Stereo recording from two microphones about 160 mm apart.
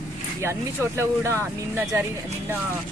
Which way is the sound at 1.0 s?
15° right (ahead or behind).